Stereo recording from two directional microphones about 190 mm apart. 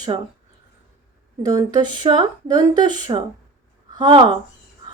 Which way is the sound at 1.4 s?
20° right (ahead or behind).